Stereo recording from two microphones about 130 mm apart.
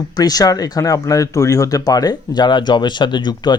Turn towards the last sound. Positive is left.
turn(degrees=35)  # may be behind; listen again after turning